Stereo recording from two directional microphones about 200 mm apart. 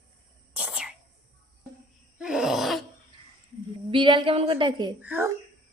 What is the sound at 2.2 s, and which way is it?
Groan, 5° right (ahead or behind).